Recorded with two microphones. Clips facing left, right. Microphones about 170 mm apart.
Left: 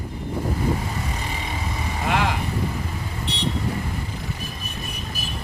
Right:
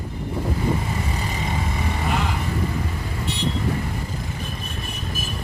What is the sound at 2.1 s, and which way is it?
Vehicle, 90° left.